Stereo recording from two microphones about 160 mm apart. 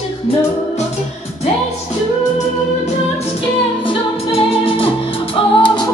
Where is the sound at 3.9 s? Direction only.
35° left (ahead or behind).